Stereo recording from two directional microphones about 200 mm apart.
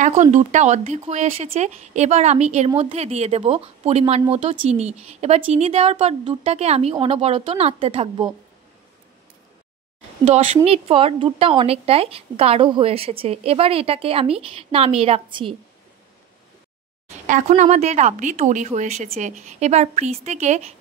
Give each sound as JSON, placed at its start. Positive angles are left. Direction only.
{"t": 0.0, "sound": "speech", "side_deg": -35}
{"t": 10.2, "sound": "a woman's voice", "side_deg": -35}
{"t": 17.3, "sound": "speech", "side_deg": -35}